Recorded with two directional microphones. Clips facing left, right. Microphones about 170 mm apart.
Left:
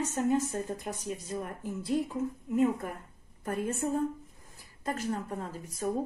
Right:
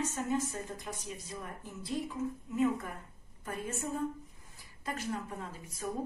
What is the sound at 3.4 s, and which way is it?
Speech, 50° left (ahead or behind).